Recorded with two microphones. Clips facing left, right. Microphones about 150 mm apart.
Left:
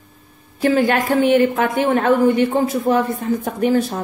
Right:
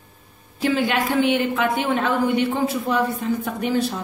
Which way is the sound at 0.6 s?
45° left (ahead or behind).